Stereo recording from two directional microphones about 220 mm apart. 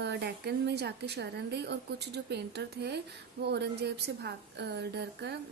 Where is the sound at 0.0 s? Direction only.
50° right (ahead or behind).